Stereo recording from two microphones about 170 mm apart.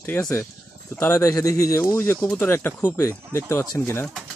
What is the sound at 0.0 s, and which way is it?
Speech, 15° left (ahead or behind).